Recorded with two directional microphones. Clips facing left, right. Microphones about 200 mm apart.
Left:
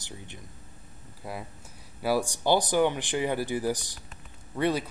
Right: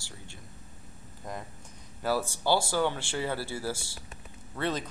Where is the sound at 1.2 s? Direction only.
10° left (ahead or behind).